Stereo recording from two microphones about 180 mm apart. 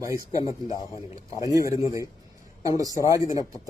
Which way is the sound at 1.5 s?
20° right (ahead or behind).